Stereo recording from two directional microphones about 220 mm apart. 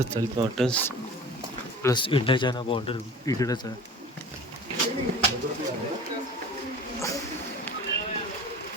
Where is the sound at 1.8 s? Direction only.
20° left (ahead or behind).